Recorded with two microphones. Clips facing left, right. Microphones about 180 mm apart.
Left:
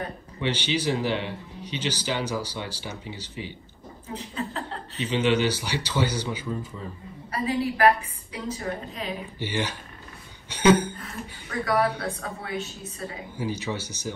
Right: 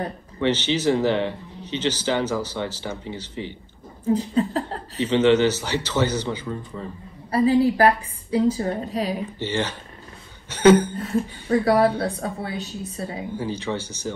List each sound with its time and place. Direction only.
0.4 s speech: 15° left (ahead or behind)
4.1 s a woman's voice: 35° right (ahead or behind)
5.3 s speech: 10° left (ahead or behind)
7.2 s a woman's voice: 35° right (ahead or behind)
9.4 s speech: 10° left (ahead or behind)
11.0 s a woman's voice: 30° right (ahead or behind)
13.4 s speech: 10° left (ahead or behind)